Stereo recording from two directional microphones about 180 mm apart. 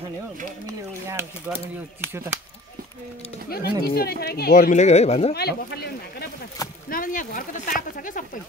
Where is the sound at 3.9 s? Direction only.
60° left (ahead or behind); by 5.3 s 35° left (ahead or behind).